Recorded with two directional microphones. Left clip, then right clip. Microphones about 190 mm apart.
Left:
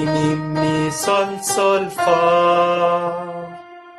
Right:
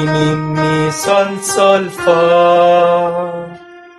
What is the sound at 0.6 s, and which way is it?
Music, 20° right (ahead or behind).